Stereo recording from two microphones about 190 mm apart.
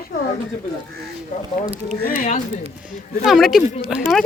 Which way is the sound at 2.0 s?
40° left (ahead or behind).